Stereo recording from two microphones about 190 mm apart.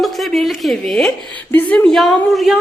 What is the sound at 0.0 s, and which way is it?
A woman's voice, centre (ahead or behind).